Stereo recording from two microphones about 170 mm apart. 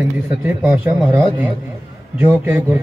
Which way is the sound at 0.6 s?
5° right (ahead or behind).